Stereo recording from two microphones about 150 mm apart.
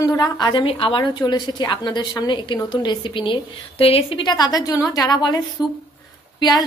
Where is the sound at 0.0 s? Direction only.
25° left (ahead or behind).